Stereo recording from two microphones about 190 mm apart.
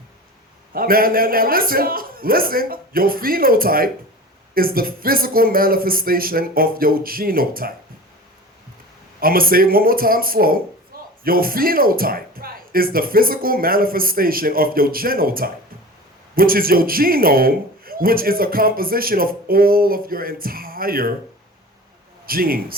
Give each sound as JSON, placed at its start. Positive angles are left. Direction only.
{"t": 0.7, "sound": "a man's voice", "side_deg": -50}
{"t": 9.2, "sound": "a man's voice", "side_deg": -50}
{"t": 22.3, "sound": "a man's voice", "side_deg": -50}